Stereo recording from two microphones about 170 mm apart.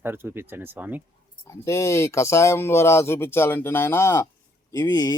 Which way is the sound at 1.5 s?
15° left (ahead or behind).